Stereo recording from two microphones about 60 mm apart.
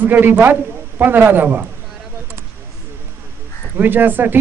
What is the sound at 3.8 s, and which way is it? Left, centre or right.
Speech, right.